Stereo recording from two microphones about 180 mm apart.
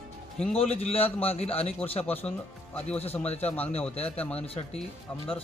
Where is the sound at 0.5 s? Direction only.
35° left (ahead or behind).